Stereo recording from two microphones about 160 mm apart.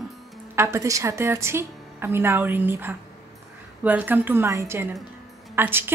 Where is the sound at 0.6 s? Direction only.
15° right (ahead or behind).